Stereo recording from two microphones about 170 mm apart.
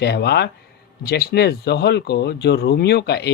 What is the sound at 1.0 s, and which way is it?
Speech, 65° left (ahead or behind).